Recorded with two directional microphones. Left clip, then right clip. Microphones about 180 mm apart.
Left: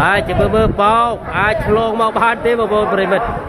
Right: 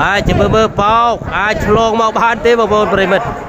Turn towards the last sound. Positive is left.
turn(degrees=-30)  # may be behind; listen again after turning